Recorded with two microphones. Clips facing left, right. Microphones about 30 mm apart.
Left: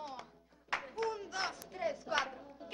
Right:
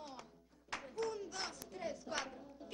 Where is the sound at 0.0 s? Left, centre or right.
Left.